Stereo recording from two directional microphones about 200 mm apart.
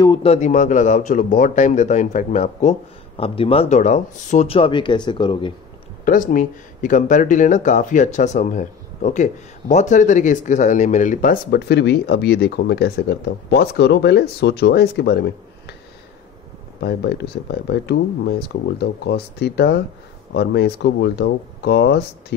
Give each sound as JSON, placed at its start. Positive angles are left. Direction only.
{"t": 0.0, "sound": "speech", "side_deg": 25}
{"t": 6.0, "sound": "speech", "side_deg": 40}
{"t": 16.8, "sound": "speech", "side_deg": 55}